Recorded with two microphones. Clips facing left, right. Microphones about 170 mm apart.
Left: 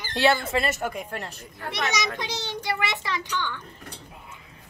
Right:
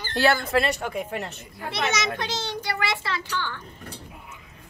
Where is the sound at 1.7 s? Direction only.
15° left (ahead or behind).